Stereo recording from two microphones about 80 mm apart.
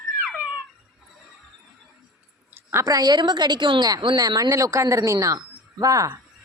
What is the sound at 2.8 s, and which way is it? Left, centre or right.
A woman's voice, right.